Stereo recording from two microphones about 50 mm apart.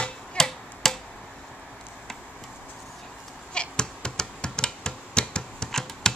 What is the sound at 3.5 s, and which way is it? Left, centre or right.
Hands, centre.